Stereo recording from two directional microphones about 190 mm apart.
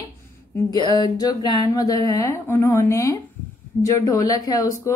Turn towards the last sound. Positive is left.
turn(degrees=20)  # may be behind; listen again after turning